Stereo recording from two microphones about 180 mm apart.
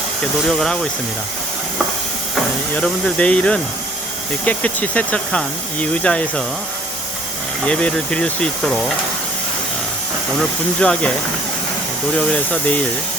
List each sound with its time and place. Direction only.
0.2 s speech: centre (ahead or behind)
2.7 s speech: 5° left (ahead or behind)
7.7 s speech: 5° left (ahead or behind)
10.8 s speech: 5° left (ahead or behind)
12.1 s speech: 10° left (ahead or behind)